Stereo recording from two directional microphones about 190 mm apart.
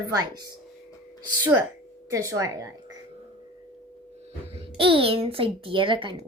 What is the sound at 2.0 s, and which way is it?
Speech, 15° right (ahead or behind).